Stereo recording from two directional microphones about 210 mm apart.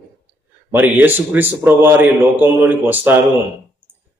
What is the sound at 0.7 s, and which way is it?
A man's voice, 10° right (ahead or behind).